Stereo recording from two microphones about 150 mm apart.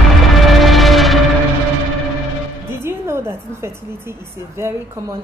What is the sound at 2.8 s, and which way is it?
A woman's voice, 15° right (ahead or behind).